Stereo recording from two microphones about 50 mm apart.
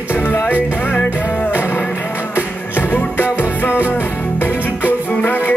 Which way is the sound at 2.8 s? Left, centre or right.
Left.